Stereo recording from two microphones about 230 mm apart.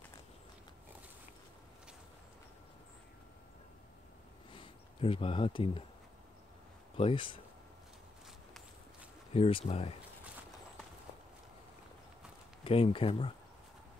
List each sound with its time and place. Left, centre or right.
4.6 s speech: left
7.0 s speech: left
9.3 s speech: left
12.6 s speech: left